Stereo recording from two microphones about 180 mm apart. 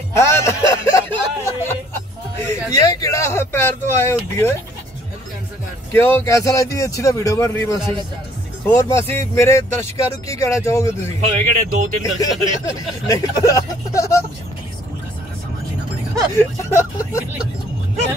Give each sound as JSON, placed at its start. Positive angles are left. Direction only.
{"t": 0.2, "sound": "a sound", "side_deg": 15}
{"t": 2.8, "sound": "a man's voice", "side_deg": 20}
{"t": 5.9, "sound": "a man's voice", "side_deg": 15}
{"t": 11.1, "sound": "speech", "side_deg": -40}
{"t": 12.0, "sound": "speech", "side_deg": 20}
{"t": 16.3, "sound": "a man's voice", "side_deg": 15}